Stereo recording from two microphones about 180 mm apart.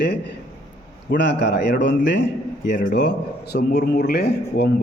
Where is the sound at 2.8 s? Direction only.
70° left (ahead or behind).